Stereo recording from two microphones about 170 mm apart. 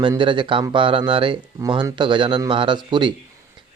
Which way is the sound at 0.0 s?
30° right (ahead or behind).